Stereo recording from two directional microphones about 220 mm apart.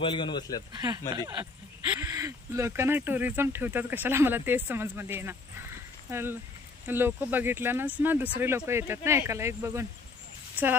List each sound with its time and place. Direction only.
0.0 s a man's voice: 20° left (ahead or behind)
0.7 s speech: 15° right (ahead or behind)